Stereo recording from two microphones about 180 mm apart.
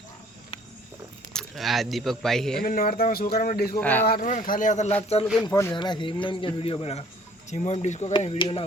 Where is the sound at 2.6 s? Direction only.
55° left (ahead or behind).